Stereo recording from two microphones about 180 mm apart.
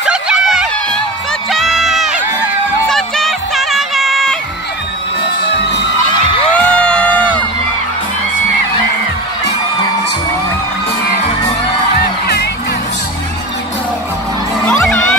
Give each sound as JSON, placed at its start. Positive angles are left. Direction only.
{"t": 0.0, "sound": "a sound", "side_deg": -5}
{"t": 1.5, "sound": "crowd", "side_deg": 0}
{"t": 2.9, "sound": "music", "side_deg": 0}
{"t": 6.5, "sound": "music", "side_deg": 5}
{"t": 12.0, "sound": "music", "side_deg": 60}